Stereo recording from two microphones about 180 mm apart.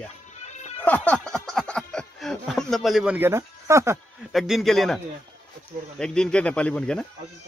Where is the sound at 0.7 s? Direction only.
10° left (ahead or behind).